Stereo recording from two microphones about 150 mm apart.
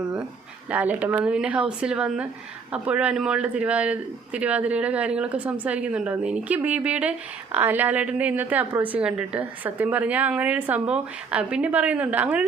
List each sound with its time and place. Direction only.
0.7 s a woman's voice: 10° right (ahead or behind)